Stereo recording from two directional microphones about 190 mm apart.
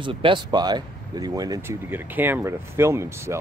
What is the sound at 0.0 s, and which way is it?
Speech, 25° right (ahead or behind).